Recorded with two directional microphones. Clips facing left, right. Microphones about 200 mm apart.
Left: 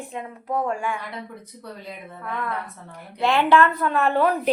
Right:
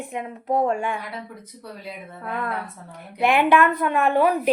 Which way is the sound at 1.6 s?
10° right (ahead or behind).